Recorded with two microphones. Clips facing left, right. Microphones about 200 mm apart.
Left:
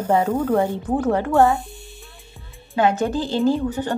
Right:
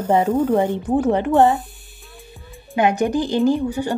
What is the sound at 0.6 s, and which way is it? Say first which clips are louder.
Speech: right 3 dB; 20° right (ahead or behind).